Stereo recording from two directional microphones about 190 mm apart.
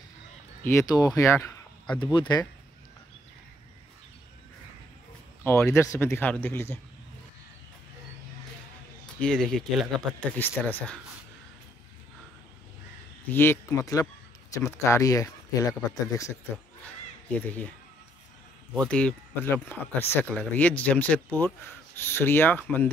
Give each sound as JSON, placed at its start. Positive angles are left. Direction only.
{"t": 0.7, "sound": "speech", "side_deg": 15}
{"t": 5.4, "sound": "speech", "side_deg": 10}
{"t": 9.2, "sound": "speech", "side_deg": 5}
{"t": 13.3, "sound": "speech", "side_deg": 10}
{"t": 18.7, "sound": "speech", "side_deg": 5}